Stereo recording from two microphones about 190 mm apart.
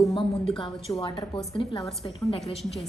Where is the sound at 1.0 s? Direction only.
25° left (ahead or behind).